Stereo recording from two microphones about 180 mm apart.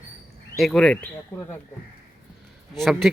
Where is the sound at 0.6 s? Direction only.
5° left (ahead or behind).